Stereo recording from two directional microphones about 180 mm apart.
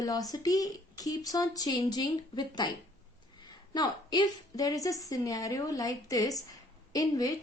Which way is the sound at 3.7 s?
25° left (ahead or behind).